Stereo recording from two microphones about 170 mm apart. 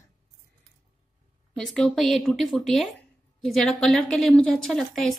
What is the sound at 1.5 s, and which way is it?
A woman's voice, centre (ahead or behind).